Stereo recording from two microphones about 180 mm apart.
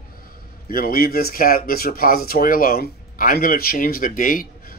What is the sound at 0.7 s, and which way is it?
Speech, 55° left (ahead or behind).